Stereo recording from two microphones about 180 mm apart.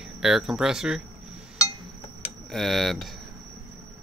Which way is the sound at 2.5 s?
Centre (ahead or behind).